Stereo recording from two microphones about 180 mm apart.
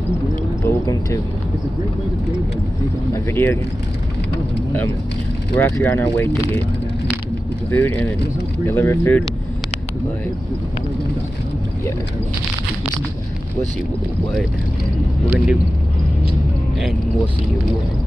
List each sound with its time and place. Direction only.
0.7 s speech: 15° left (ahead or behind)
3.1 s speech: 10° left (ahead or behind)
5.6 s speech: 10° left (ahead or behind)
7.7 s speech: 15° left (ahead or behind)
15.2 s speech: 5° right (ahead or behind)